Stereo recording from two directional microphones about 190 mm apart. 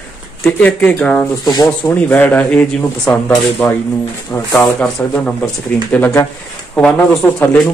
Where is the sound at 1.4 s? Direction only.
20° left (ahead or behind).